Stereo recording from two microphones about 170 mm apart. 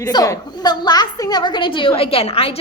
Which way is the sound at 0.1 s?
25° left (ahead or behind).